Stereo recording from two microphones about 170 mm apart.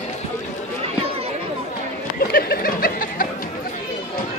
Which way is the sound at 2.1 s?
65° left (ahead or behind).